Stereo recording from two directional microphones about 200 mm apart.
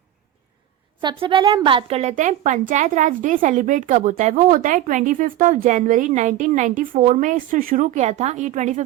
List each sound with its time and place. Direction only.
1.0 s a woman's voice: 25° right (ahead or behind)